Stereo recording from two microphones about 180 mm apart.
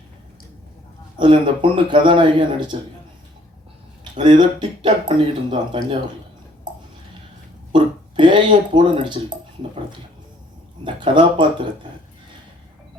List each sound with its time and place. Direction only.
1.2 s speech: 25° right (ahead or behind)
4.2 s speech: 25° right (ahead or behind)
7.7 s speech: 25° right (ahead or behind)
10.8 s speech: 25° right (ahead or behind)